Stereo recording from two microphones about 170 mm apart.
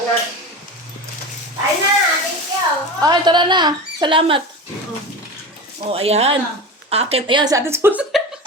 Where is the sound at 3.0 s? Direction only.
25° right (ahead or behind).